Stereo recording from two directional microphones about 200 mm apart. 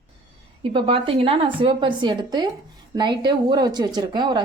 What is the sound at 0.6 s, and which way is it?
A woman's voice, 25° right (ahead or behind).